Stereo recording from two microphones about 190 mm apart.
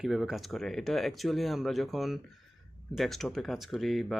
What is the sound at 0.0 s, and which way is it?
Speech, centre (ahead or behind).